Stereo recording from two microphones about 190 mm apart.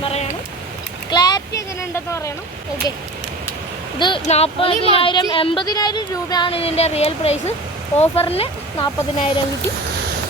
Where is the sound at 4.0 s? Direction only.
25° left (ahead or behind).